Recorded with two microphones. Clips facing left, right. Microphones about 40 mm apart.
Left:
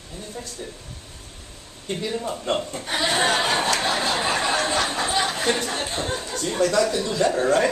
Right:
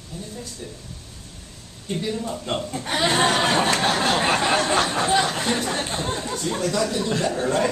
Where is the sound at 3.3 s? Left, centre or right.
Centre.